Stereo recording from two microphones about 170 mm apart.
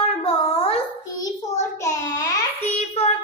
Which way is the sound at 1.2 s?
20° left (ahead or behind).